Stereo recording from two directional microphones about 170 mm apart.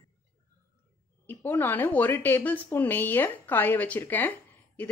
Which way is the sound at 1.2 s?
10° left (ahead or behind).